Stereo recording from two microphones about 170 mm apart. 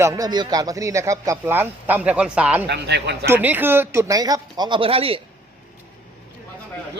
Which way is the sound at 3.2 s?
10° right (ahead or behind).